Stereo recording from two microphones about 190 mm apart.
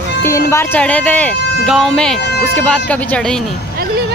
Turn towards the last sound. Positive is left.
turn(degrees=5)  # may be behind; listen again after turning